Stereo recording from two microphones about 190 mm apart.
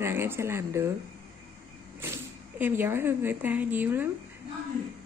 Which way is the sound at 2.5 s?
10° right (ahead or behind).